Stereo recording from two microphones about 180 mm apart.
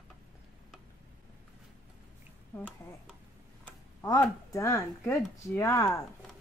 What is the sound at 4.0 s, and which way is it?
Speech, 20° left (ahead or behind).